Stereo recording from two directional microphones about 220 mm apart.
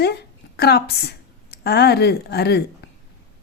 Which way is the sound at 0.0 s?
50° left (ahead or behind).